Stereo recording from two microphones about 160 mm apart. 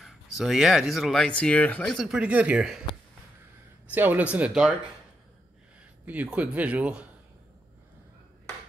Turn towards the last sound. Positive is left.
turn(degrees=-10)  # may be behind; listen again after turning